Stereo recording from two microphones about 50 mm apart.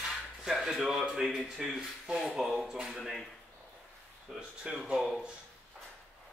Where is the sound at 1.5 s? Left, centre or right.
Centre.